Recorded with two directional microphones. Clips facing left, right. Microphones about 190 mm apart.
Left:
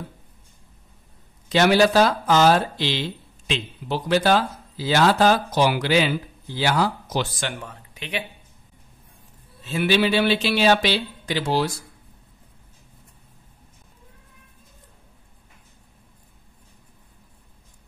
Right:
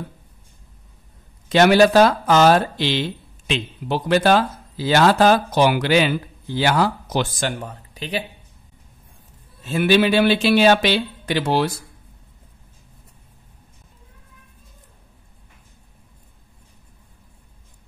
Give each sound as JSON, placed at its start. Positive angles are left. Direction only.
{"t": 1.5, "sound": "speech", "side_deg": -55}
{"t": 7.3, "sound": "speech", "side_deg": -40}
{"t": 9.6, "sound": "speech", "side_deg": -55}